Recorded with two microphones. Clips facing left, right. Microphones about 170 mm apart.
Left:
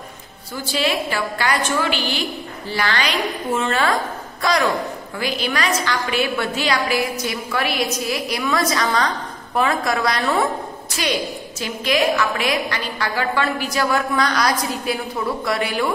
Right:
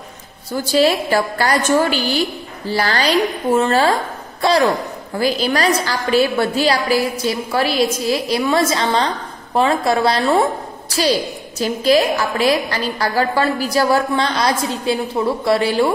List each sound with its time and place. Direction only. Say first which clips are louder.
0.7 s a woman's voice: right 7 dB; 40° right (ahead or behind)